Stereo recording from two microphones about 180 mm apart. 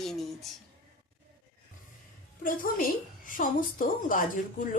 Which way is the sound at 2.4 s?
55° left (ahead or behind).